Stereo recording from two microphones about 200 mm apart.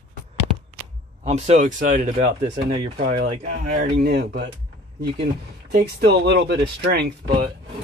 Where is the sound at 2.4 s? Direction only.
25° right (ahead or behind).